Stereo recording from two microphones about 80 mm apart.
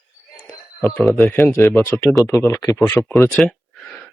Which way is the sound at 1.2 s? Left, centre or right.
Left.